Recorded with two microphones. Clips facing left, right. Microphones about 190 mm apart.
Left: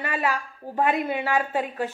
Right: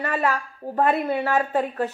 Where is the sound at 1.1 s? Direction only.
40° right (ahead or behind).